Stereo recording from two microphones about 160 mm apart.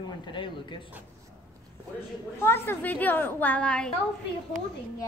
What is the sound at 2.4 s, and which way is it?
A woman's voice, 15° left (ahead or behind).